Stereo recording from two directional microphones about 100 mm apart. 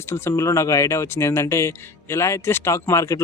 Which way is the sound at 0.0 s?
25° left (ahead or behind).